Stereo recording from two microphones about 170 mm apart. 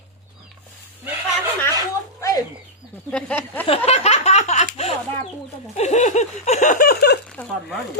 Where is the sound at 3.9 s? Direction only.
40° left (ahead or behind).